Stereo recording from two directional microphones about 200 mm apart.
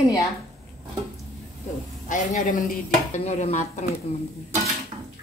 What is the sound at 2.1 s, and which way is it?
A woman's voice, 40° left (ahead or behind).